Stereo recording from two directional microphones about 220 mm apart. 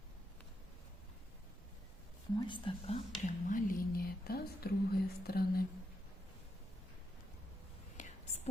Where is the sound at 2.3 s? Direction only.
20° left (ahead or behind).